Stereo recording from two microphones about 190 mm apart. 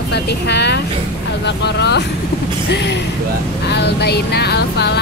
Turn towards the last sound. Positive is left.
turn(degrees=60)  # may be behind; listen again after turning